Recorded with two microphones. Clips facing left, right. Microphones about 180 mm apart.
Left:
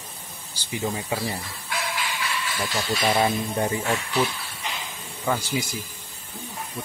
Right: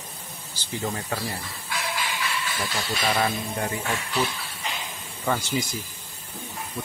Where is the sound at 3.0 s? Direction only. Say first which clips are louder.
Left 3 dB; 20° left (ahead or behind).